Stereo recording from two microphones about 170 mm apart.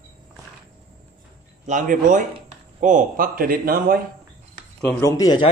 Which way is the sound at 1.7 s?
50° right (ahead or behind).